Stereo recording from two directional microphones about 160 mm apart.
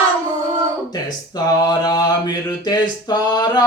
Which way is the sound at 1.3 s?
25° left (ahead or behind).